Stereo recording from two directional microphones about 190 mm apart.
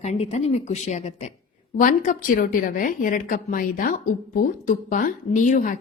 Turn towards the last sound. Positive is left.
turn(degrees=40)  # may be behind; listen again after turning